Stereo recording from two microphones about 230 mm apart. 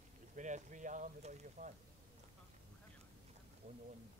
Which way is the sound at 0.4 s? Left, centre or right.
Right.